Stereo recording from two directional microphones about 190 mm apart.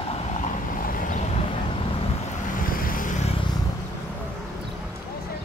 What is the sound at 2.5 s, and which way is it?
Vehicle, 50° left (ahead or behind).